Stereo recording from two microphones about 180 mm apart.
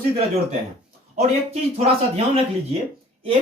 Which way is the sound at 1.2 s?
40° right (ahead or behind).